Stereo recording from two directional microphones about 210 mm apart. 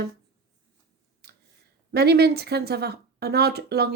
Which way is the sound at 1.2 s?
50° right (ahead or behind).